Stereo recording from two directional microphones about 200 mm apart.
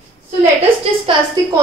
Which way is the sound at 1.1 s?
25° right (ahead or behind).